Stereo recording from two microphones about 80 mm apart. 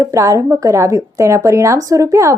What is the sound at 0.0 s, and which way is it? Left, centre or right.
A woman's voice, right.